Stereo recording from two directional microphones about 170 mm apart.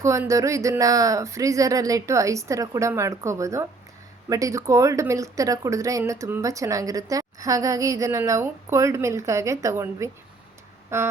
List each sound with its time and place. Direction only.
0.0 s speech: 15° right (ahead or behind)